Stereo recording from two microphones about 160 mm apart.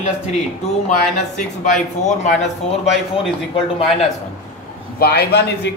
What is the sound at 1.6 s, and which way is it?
Speech, 50° left (ahead or behind).